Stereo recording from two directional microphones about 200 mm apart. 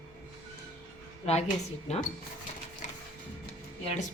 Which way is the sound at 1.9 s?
35° left (ahead or behind).